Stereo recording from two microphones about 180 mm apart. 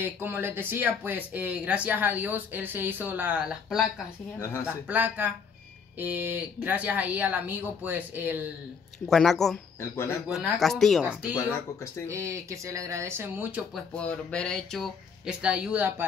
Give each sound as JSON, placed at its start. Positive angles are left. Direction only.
{"t": 0.0, "sound": "speech", "side_deg": -10}
{"t": 9.0, "sound": "speech", "side_deg": 0}
{"t": 9.8, "sound": "speech", "side_deg": 15}
{"t": 10.2, "sound": "speech", "side_deg": 0}
{"t": 11.3, "sound": "speech", "side_deg": 15}
{"t": 12.1, "sound": "speech", "side_deg": -15}
{"t": 13.9, "sound": "speech", "side_deg": 5}